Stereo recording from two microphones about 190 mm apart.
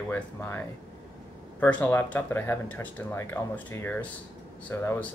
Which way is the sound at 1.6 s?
10° left (ahead or behind).